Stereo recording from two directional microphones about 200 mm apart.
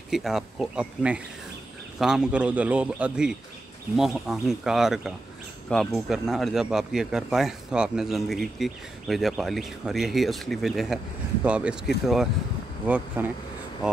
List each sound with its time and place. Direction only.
0.1 s a man's voice: centre (ahead or behind)
12.8 s speech: 5° right (ahead or behind)